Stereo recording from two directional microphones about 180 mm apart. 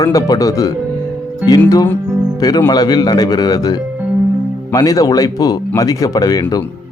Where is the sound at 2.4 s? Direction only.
20° left (ahead or behind).